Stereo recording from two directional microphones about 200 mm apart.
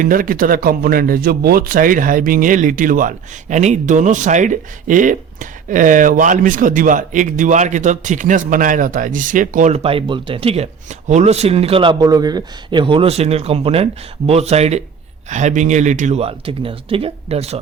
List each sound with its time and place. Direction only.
0.0 s a man's voice: 45° right (ahead or behind)